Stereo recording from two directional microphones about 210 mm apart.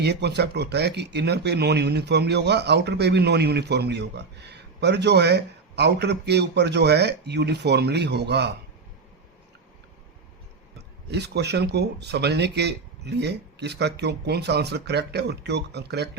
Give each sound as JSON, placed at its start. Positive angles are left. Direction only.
{"t": 0.0, "sound": "speech", "side_deg": -55}
{"t": 10.8, "sound": "speech", "side_deg": -55}